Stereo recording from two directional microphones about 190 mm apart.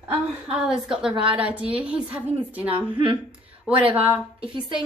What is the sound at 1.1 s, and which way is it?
Speech, 25° right (ahead or behind).